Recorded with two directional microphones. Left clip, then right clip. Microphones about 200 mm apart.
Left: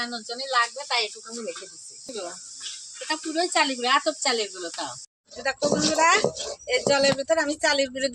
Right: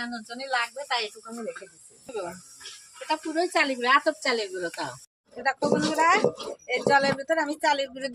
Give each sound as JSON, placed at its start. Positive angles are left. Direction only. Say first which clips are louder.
{"t": 0.0, "sound": "speech", "louder": "left 4 dB", "side_deg": 0}
{"t": 3.1, "sound": "speech", "louder": "even", "side_deg": 5}